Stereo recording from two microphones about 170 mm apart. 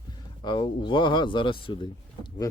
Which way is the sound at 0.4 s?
30° left (ahead or behind).